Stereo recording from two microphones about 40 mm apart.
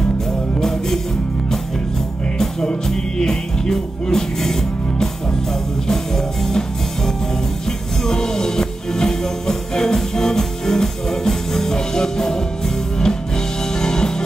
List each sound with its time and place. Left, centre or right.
0.6 s music: centre
2.3 s music: centre
8.0 s music: centre